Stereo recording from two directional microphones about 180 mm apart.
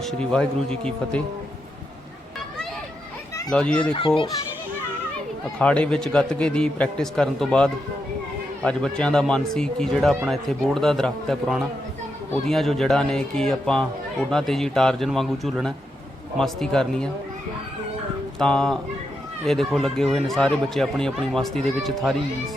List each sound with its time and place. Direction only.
0.0 s speech: 5° left (ahead or behind)
3.5 s speech: 5° left (ahead or behind)
3.9 s a child's voice: 30° left (ahead or behind)
5.5 s speech: 5° left (ahead or behind)
18.3 s speech: centre (ahead or behind)